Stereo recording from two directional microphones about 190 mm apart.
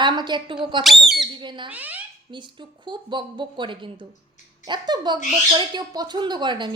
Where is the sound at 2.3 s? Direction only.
25° right (ahead or behind).